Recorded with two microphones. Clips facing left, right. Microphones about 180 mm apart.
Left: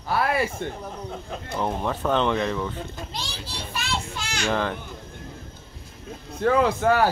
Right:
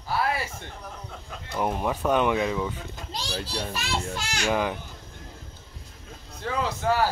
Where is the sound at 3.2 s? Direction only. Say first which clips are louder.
Right 5 dB; 45° right (ahead or behind).